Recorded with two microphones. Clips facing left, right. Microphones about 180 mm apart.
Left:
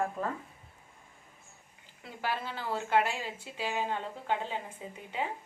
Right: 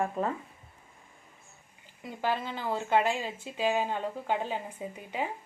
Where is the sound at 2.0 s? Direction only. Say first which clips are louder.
Right 4 dB; 20° right (ahead or behind).